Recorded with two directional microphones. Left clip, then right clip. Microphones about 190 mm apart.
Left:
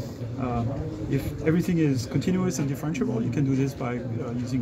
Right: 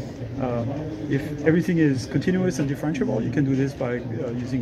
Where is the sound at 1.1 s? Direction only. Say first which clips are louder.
Right 5 dB; 15° left (ahead or behind).